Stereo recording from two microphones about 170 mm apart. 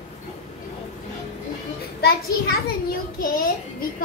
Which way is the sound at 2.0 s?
65° left (ahead or behind).